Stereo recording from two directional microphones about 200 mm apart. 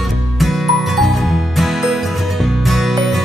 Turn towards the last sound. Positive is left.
turn(degrees=0)  # may be behind; listen again after turning